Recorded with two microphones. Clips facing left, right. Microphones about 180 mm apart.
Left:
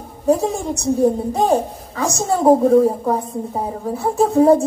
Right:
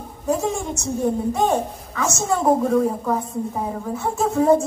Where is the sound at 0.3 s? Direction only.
35° left (ahead or behind).